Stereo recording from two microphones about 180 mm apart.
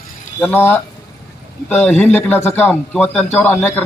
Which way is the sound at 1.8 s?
10° left (ahead or behind).